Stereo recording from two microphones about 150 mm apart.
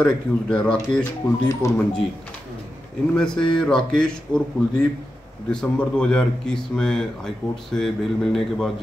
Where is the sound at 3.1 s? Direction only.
5° left (ahead or behind).